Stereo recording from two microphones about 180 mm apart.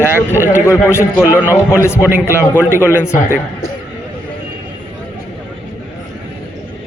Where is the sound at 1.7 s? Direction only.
15° left (ahead or behind).